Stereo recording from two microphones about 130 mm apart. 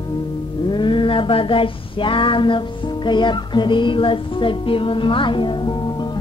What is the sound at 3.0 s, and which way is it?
Music, 35° left (ahead or behind).